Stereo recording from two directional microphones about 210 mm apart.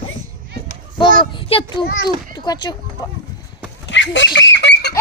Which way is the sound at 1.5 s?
25° left (ahead or behind).